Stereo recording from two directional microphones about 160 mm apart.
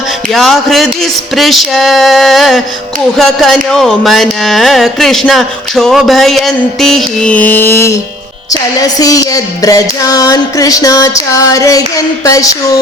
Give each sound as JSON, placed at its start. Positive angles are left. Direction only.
{"t": 0.3, "sound": "music", "side_deg": 0}